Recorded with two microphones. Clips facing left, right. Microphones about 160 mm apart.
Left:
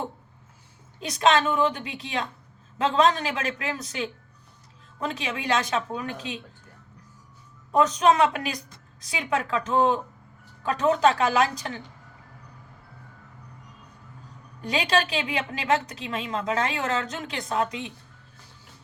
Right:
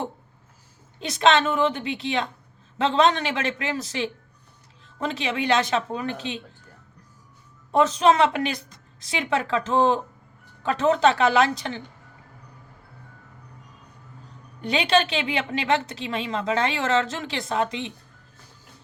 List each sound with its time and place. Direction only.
0.9 s a woman's voice: 25° right (ahead or behind)
7.7 s a woman's voice: 30° right (ahead or behind)
14.6 s a woman's voice: 25° right (ahead or behind)